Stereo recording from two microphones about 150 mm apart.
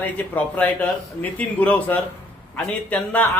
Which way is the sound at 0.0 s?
10° left (ahead or behind).